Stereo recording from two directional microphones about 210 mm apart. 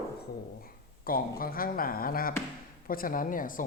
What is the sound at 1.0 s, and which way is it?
Speech, 45° left (ahead or behind).